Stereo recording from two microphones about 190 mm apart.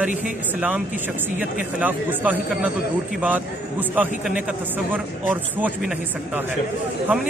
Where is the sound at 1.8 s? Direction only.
10° right (ahead or behind).